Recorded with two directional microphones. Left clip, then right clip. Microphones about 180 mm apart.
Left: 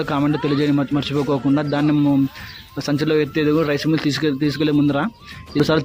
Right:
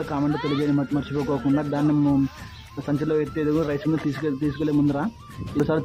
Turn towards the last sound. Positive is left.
turn(degrees=20)  # may be behind; listen again after turning